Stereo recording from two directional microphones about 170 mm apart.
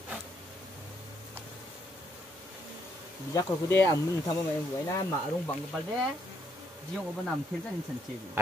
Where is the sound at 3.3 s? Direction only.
15° left (ahead or behind).